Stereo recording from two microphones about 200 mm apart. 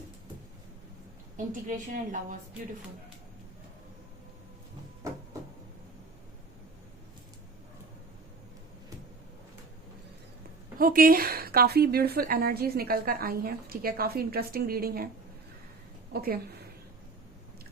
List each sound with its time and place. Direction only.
1.6 s a woman's voice: 40° right (ahead or behind)
10.8 s a woman's voice: 45° right (ahead or behind)
16.2 s a woman's voice: 50° right (ahead or behind)